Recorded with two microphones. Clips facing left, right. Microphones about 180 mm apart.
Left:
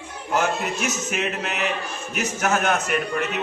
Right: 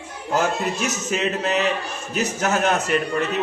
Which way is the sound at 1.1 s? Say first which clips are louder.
Right 5 dB; 35° right (ahead or behind).